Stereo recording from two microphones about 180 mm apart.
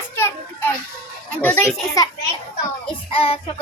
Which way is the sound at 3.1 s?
30° left (ahead or behind).